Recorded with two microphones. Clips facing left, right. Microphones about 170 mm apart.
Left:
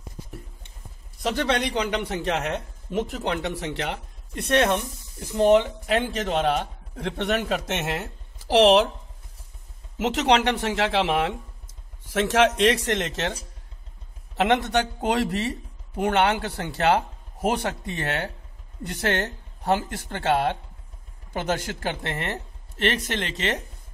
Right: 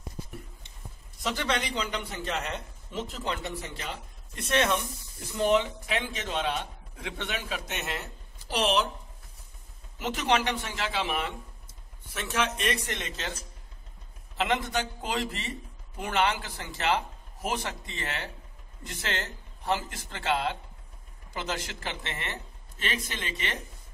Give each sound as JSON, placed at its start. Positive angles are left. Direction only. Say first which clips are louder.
{"t": 1.3, "sound": "a man's voice", "louder": "left 6 dB", "side_deg": 60}
{"t": 9.9, "sound": "speech", "louder": "left 6 dB", "side_deg": 75}
{"t": 14.3, "sound": "a man's voice", "louder": "left 7 dB", "side_deg": 70}